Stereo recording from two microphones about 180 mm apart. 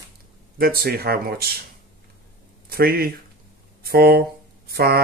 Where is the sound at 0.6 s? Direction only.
55° right (ahead or behind).